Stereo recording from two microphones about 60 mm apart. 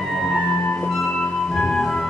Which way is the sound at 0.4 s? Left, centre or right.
Left.